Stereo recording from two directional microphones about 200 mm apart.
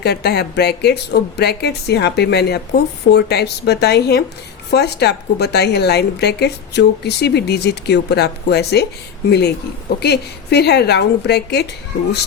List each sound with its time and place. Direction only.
0.0 s speech: 55° left (ahead or behind)
10.0 s speech: 55° left (ahead or behind)